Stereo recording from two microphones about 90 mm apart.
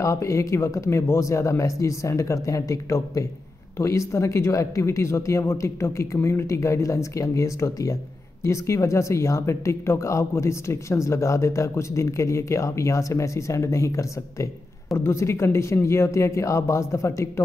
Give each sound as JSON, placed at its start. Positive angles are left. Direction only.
{"t": 0.0, "sound": "speech", "side_deg": 35}